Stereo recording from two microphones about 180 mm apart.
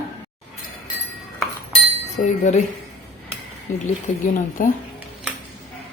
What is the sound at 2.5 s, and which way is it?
Speech, 40° left (ahead or behind).